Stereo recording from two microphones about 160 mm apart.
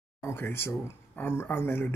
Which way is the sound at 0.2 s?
15° left (ahead or behind).